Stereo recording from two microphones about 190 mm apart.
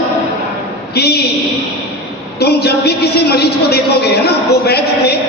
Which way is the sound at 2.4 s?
60° left (ahead or behind).